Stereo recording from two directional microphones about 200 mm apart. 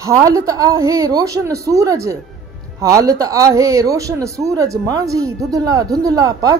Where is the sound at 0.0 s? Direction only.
15° right (ahead or behind).